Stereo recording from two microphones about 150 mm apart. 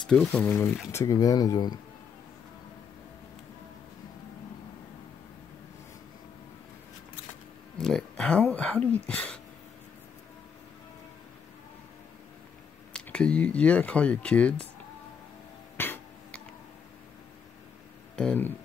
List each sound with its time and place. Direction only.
0.0 s speech: 5° left (ahead or behind)
0.9 s speech: 25° left (ahead or behind)
7.7 s speech: 5° left (ahead or behind)
12.9 s speech: 5° left (ahead or behind)
15.8 s a sound: 15° left (ahead or behind)
18.1 s speech: 10° left (ahead or behind)